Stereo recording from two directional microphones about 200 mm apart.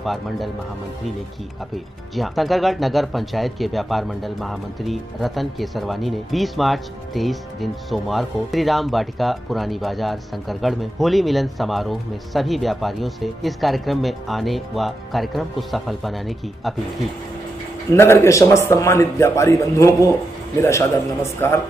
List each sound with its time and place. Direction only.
0.0 s speech: centre (ahead or behind)
2.1 s speech: centre (ahead or behind)
17.9 s speech: 10° left (ahead or behind)